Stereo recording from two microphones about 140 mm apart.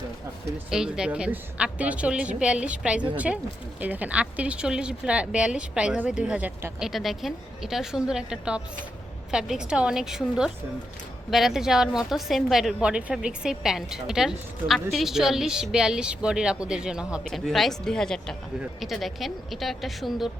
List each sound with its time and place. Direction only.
0.7 s a woman's voice: 5° right (ahead or behind)